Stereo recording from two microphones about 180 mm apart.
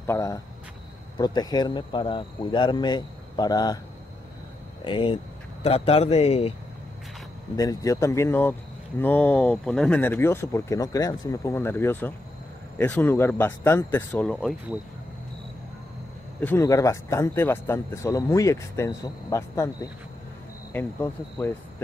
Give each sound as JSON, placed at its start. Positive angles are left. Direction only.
{"t": 0.0, "sound": "speech", "side_deg": 15}
{"t": 4.8, "sound": "speech", "side_deg": 30}
{"t": 7.5, "sound": "speech", "side_deg": 20}
{"t": 16.3, "sound": "speech", "side_deg": 10}